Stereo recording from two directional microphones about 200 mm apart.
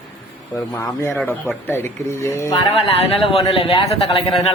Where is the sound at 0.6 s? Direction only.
15° left (ahead or behind).